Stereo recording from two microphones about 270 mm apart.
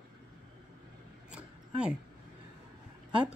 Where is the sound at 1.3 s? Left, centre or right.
Centre.